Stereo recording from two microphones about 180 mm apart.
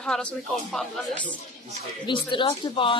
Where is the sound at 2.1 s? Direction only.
25° left (ahead or behind).